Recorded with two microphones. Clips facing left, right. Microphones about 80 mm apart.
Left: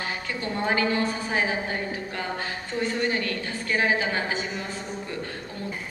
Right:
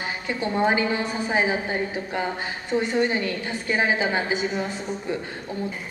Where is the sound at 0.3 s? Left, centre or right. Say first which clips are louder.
Right 6 dB; right.